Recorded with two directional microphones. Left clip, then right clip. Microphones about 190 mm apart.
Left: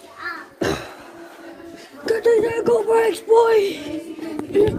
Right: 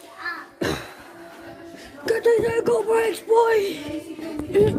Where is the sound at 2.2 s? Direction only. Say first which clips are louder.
Left 2 dB; 20° right (ahead or behind).